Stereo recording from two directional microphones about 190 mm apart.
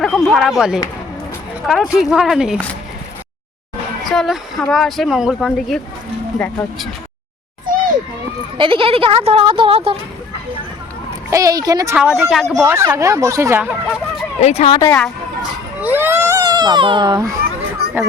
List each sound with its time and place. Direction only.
0.0 s speech: centre (ahead or behind)
4.0 s speech: centre (ahead or behind)
8.5 s speech: 25° right (ahead or behind)
11.3 s speech: 20° right (ahead or behind)
11.9 s speech: 5° right (ahead or behind)
12.6 s speech: 10° right (ahead or behind)
14.4 s speech: 35° left (ahead or behind)
14.8 s speech: 10° left (ahead or behind)
15.8 s baby cry: 10° right (ahead or behind)
17.4 s children playing: 55° right (ahead or behind)